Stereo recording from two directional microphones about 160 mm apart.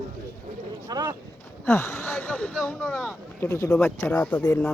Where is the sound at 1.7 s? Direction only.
15° left (ahead or behind).